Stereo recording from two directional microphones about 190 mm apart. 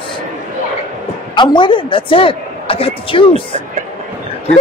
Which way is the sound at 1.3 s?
25° left (ahead or behind).